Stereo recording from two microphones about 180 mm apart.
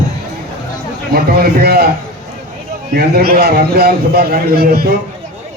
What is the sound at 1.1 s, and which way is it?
Speech, 60° right (ahead or behind).